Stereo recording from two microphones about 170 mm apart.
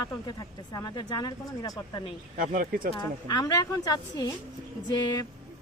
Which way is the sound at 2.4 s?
55° right (ahead or behind).